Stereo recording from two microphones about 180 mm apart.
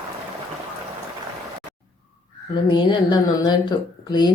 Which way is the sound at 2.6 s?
25° left (ahead or behind).